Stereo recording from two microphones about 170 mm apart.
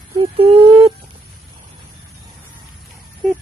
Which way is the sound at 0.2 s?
30° right (ahead or behind).